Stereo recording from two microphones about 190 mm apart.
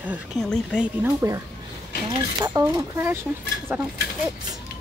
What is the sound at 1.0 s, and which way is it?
Speech, 15° right (ahead or behind).